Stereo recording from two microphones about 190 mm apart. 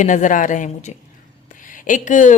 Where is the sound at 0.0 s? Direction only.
40° left (ahead or behind).